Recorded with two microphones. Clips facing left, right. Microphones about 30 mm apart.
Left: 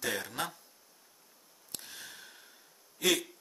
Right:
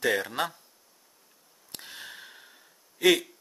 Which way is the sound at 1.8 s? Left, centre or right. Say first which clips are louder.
Right 9 dB; right.